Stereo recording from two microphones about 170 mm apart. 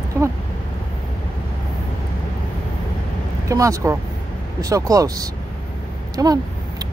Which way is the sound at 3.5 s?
20° right (ahead or behind).